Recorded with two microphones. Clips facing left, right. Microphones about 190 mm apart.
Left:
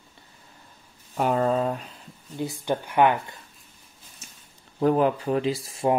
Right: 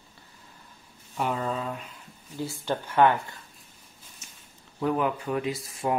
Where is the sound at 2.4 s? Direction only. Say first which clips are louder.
Left 3 dB; 15° left (ahead or behind).